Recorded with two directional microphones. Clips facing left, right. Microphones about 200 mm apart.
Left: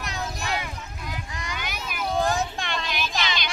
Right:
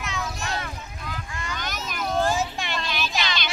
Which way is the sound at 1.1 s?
15° left (ahead or behind).